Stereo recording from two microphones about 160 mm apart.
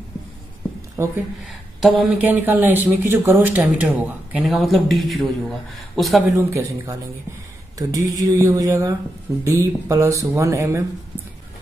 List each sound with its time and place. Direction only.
0.9 s speech: 15° right (ahead or behind)
1.8 s speech: centre (ahead or behind)
2.2 s speech: 10° right (ahead or behind)
6.3 s speech: 20° right (ahead or behind)